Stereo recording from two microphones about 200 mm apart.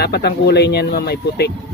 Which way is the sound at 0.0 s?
55° left (ahead or behind).